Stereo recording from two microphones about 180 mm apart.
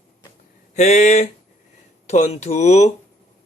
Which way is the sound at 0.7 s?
40° left (ahead or behind).